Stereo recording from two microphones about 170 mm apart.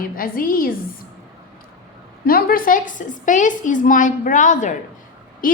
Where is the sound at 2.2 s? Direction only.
60° left (ahead or behind).